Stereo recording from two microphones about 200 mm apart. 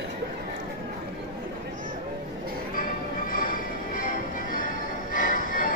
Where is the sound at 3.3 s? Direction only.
45° left (ahead or behind).